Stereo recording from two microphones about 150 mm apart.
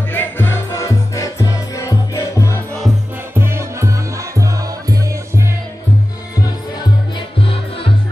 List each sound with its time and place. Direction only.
0.1 s music: 15° left (ahead or behind)
3.3 s music: 15° right (ahead or behind)
7.2 s music: 35° left (ahead or behind)